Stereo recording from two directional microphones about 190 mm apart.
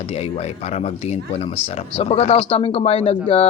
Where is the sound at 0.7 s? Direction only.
35° left (ahead or behind).